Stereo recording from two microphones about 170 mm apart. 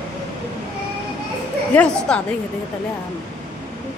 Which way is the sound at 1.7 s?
5° left (ahead or behind).